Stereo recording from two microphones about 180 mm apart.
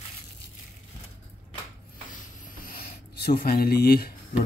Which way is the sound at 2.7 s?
60° left (ahead or behind).